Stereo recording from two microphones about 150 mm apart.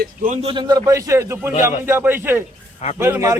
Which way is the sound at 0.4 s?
30° right (ahead or behind).